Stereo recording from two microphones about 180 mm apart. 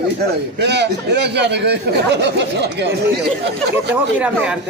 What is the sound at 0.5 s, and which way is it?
Speech, 70° right (ahead or behind).